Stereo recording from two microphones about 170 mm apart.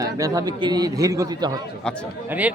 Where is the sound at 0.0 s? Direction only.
20° right (ahead or behind).